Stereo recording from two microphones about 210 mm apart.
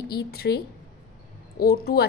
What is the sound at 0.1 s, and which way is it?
A woman's voice, 50° left (ahead or behind).